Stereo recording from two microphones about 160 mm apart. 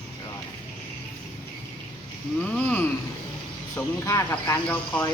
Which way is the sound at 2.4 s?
10° left (ahead or behind).